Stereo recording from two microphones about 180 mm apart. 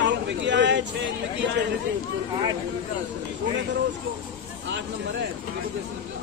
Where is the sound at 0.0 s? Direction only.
80° right.